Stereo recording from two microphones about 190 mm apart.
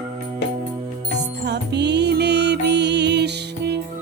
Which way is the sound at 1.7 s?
65° right (ahead or behind).